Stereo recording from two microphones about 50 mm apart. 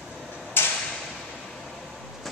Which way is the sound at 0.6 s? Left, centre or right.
Left.